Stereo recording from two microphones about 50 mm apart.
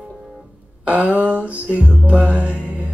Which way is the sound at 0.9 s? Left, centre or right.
Right.